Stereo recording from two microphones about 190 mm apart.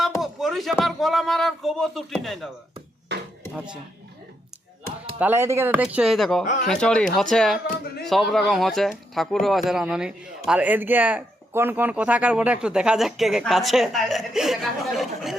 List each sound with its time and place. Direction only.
0.2 s speech: centre (ahead or behind)
3.1 s a sound: 65° right (ahead or behind)
5.2 s speech: 10° right (ahead or behind)